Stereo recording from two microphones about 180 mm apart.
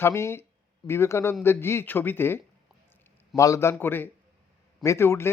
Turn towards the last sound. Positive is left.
turn(degrees=15)  # may be behind; listen again after turning